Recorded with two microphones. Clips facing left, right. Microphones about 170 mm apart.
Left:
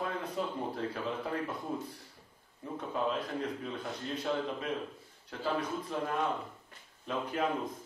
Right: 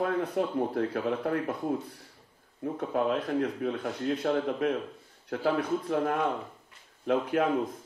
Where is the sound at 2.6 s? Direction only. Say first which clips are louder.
Right 6 dB; 60° right (ahead or behind).